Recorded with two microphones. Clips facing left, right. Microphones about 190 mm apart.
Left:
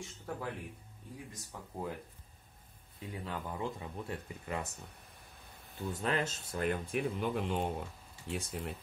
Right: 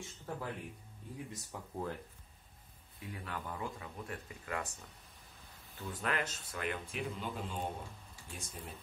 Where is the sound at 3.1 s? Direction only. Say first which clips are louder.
Left 3 dB; 25° left (ahead or behind).